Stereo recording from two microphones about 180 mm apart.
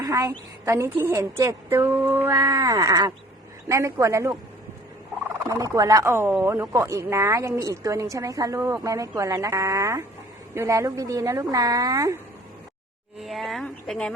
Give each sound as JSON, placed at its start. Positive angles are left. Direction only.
{"t": 0.0, "sound": "speech", "side_deg": -20}
{"t": 5.5, "sound": "a woman's voice", "side_deg": -20}
{"t": 13.1, "sound": "speech", "side_deg": 0}